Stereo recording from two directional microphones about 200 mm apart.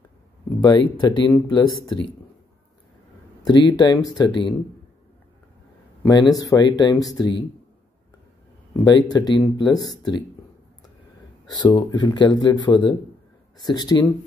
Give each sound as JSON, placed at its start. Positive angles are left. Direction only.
{"t": 0.6, "sound": "speech", "side_deg": 20}
{"t": 3.4, "sound": "speech", "side_deg": 20}
{"t": 6.3, "sound": "speech", "side_deg": 20}
{"t": 8.7, "sound": "speech", "side_deg": 20}
{"t": 11.5, "sound": "speech", "side_deg": 20}